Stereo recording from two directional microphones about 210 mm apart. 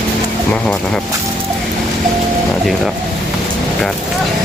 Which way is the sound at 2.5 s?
Centre (ahead or behind).